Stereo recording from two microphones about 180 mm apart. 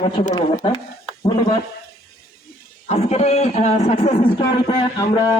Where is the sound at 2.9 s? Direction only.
35° left (ahead or behind).